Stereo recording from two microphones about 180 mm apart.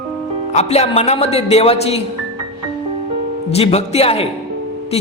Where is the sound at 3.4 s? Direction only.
35° left (ahead or behind).